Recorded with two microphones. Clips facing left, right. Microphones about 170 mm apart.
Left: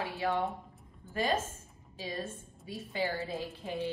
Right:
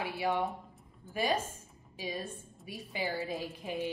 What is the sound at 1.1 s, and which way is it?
Speech, 10° right (ahead or behind).